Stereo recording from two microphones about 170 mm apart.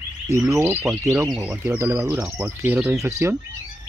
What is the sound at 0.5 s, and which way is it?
Speech, 15° right (ahead or behind).